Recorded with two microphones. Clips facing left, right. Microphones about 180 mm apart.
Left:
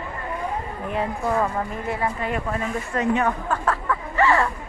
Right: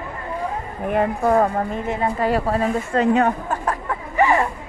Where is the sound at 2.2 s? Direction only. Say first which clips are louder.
Right 7 dB; 35° right (ahead or behind).